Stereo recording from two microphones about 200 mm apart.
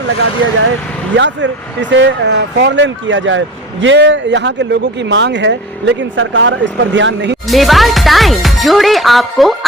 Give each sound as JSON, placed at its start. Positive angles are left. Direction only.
{"t": 0.6, "sound": "speech", "side_deg": -70}
{"t": 7.4, "sound": "speech", "side_deg": 0}